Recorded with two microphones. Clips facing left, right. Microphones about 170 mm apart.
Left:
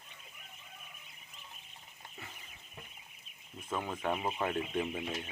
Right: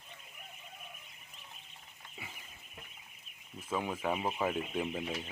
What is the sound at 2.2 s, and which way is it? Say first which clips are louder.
Livestock: right 2 dB; 10° right (ahead or behind).